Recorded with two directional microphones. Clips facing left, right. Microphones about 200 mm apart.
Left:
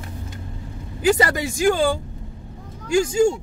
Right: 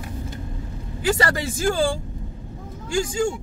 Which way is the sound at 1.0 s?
20° left (ahead or behind).